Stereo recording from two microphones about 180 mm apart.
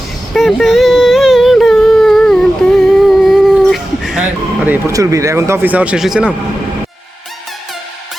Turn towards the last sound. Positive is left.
turn(degrees=0)  # may be behind; listen again after turning